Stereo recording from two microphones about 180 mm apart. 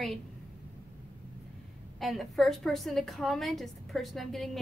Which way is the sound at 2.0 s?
Centre (ahead or behind).